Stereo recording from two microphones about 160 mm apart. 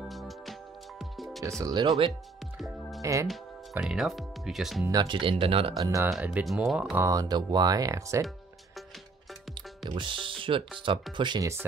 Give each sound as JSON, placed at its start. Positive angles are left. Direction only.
{"t": 0.1, "sound": "music", "side_deg": 0}
{"t": 1.6, "sound": "speech", "side_deg": -25}
{"t": 3.0, "sound": "speech", "side_deg": -20}
{"t": 3.7, "sound": "speech", "side_deg": 0}
{"t": 4.9, "sound": "speech", "side_deg": -30}
{"t": 5.8, "sound": "speech", "side_deg": -20}
{"t": 7.0, "sound": "speech", "side_deg": -20}
{"t": 9.8, "sound": "speech", "side_deg": -30}